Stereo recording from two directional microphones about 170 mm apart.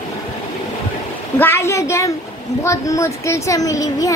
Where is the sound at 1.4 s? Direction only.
15° left (ahead or behind).